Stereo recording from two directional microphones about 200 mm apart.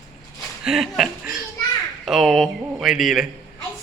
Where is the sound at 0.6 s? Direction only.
Centre (ahead or behind).